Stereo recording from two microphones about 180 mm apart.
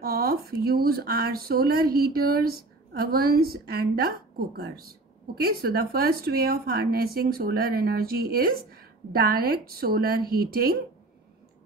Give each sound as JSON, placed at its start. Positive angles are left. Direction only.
{"t": 0.0, "sound": "speech", "side_deg": -55}